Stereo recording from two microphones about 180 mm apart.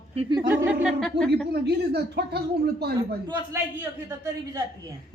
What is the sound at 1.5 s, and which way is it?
A woman's voice, 65° right (ahead or behind).